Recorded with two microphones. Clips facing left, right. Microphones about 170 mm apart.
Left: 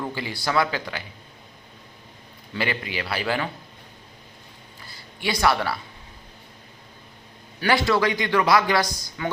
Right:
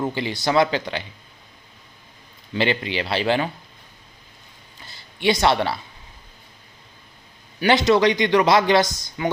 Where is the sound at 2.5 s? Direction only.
25° right (ahead or behind).